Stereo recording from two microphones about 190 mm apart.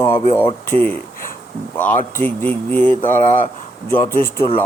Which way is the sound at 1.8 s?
10° left (ahead or behind).